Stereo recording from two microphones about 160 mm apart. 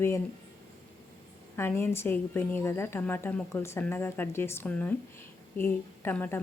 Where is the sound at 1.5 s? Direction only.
15° left (ahead or behind).